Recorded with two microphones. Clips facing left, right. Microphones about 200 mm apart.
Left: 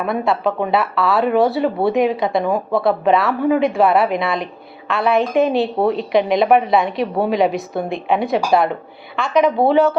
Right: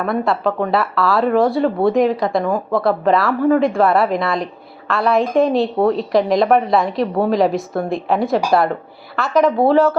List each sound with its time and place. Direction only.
0.1 s a woman's voice: centre (ahead or behind)